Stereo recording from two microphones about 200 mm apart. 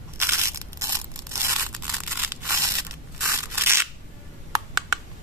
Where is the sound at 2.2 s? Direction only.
15° right (ahead or behind).